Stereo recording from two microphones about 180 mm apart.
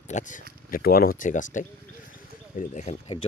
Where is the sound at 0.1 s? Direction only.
45° left (ahead or behind).